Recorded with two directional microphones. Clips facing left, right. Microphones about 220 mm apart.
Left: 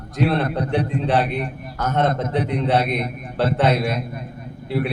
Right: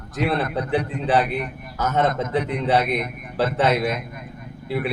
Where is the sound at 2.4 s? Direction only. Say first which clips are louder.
Left 3 dB; 35° left (ahead or behind).